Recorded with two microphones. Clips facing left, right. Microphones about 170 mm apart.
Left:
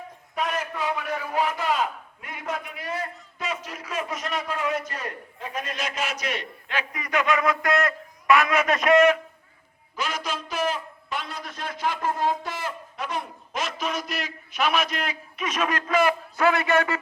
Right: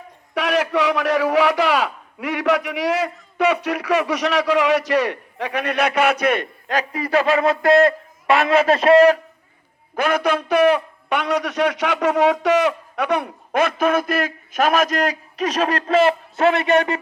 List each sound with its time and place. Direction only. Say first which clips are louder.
0.3 s a man's voice: right 9 dB; 80° right; by 9.1 s 35° right (ahead or behind)
9.9 s a man's voice: right 11 dB; 60° right (ahead or behind); by 17.0 s 20° right (ahead or behind)